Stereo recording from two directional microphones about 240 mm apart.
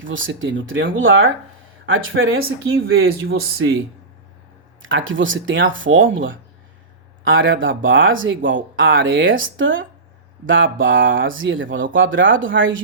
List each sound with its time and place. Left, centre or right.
0.1 s speech: right
4.9 s speech: right